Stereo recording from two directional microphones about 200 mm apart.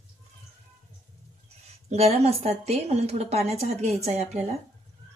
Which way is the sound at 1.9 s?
30° right (ahead or behind).